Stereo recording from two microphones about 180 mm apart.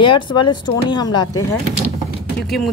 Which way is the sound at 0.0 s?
25° left (ahead or behind).